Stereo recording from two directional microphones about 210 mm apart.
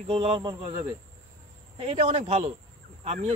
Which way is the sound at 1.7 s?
30° right (ahead or behind).